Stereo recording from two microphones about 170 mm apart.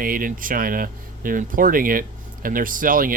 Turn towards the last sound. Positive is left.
turn(degrees=-55)  # may be behind; listen again after turning